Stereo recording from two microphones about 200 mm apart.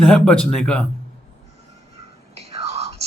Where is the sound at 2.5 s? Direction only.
30° right (ahead or behind).